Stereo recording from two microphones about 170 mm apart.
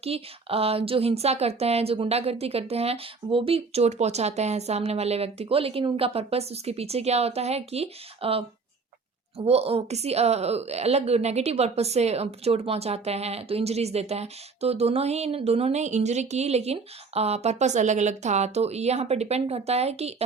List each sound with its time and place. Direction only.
0.0 s a woman's voice: 35° right (ahead or behind)